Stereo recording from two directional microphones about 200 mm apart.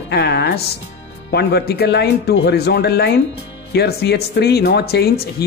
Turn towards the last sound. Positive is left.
turn(degrees=50)  # may be behind; listen again after turning